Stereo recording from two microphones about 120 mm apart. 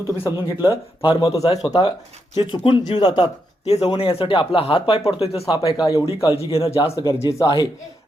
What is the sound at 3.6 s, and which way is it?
Speech, 65° left (ahead or behind).